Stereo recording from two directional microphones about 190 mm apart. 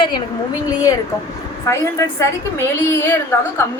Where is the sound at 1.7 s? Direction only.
15° left (ahead or behind).